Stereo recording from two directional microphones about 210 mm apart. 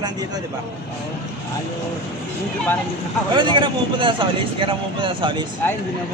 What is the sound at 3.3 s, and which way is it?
Speech, 20° right (ahead or behind).